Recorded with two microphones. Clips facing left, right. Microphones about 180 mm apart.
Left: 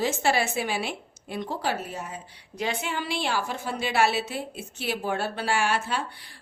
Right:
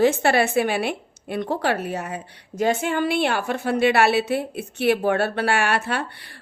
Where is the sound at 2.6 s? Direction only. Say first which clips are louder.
Right 9 dB; 45° right (ahead or behind).